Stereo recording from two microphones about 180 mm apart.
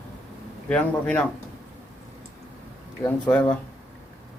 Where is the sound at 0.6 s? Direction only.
5° left (ahead or behind).